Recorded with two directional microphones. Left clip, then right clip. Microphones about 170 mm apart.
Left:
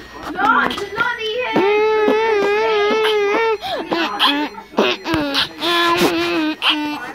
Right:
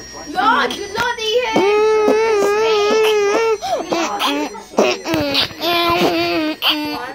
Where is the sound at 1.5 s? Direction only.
5° right (ahead or behind).